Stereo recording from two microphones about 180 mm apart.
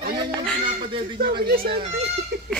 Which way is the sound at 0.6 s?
30° right (ahead or behind).